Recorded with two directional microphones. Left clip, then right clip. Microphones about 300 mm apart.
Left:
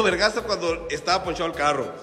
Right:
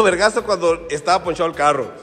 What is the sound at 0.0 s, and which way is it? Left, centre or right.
Speech, centre.